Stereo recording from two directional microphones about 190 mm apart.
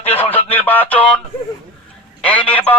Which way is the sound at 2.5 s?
10° left (ahead or behind).